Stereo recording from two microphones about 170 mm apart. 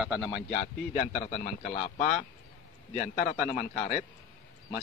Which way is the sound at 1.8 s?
50° left (ahead or behind).